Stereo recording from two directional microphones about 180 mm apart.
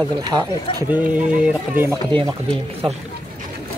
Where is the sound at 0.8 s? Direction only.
10° right (ahead or behind).